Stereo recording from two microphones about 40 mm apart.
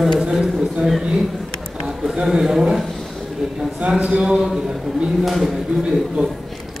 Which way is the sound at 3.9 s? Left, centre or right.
Right.